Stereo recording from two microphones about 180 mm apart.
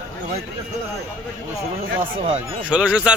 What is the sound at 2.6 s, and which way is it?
Speech, 5° right (ahead or behind).